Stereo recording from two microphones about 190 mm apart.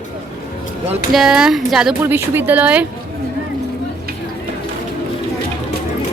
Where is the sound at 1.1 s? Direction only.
Centre (ahead or behind).